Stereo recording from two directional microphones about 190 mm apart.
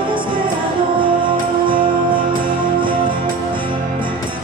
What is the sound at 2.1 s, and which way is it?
Music, 45° right (ahead or behind).